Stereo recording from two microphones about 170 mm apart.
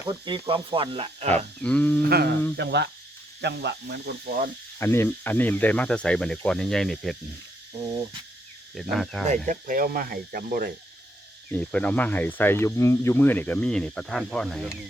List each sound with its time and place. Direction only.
0.0 s speech: 20° right (ahead or behind)
0.4 s speech: 30° right (ahead or behind)
1.6 s speech: 5° left (ahead or behind)
2.0 s speech: 65° right (ahead or behind)
2.6 s speech: 85° right
4.8 s speech: 15° left (ahead or behind)
8.7 s speech: centre (ahead or behind)
9.5 s speech: 55° right (ahead or behind)
11.5 s speech: 5° left (ahead or behind)